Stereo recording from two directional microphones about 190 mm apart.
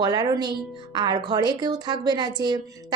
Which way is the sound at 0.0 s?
20° right (ahead or behind).